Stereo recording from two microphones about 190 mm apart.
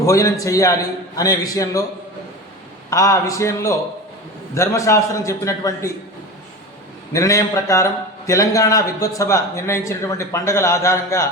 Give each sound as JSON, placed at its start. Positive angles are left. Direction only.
{"t": 0.0, "sound": "a man's voice", "side_deg": 15}
{"t": 2.9, "sound": "a man's voice", "side_deg": 15}
{"t": 7.1, "sound": "a man's voice", "side_deg": 15}